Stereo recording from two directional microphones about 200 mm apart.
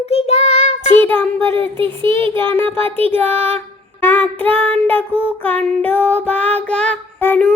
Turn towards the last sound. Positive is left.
turn(degrees=10)  # may be behind; listen again after turning